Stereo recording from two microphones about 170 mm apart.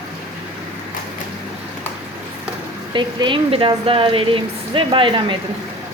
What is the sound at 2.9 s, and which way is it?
Speech, 30° right (ahead or behind).